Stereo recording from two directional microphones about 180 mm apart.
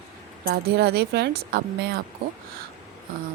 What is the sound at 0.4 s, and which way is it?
A woman's voice, 60° right (ahead or behind).